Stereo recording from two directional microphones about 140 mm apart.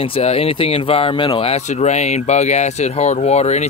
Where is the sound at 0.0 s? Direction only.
45° left (ahead or behind).